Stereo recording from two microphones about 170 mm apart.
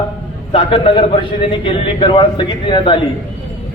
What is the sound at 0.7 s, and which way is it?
A man's voice, 30° left (ahead or behind).